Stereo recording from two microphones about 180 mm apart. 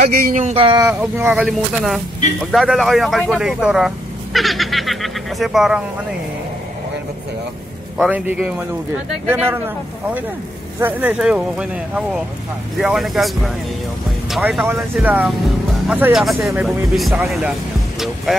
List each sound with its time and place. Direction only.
0.1 s speech: 50° right (ahead or behind)
0.6 s speech: 30° right (ahead or behind)
0.8 s speech: 10° right (ahead or behind)
8.0 s speech: 5° right (ahead or behind)
10.8 s speech: 10° right (ahead or behind)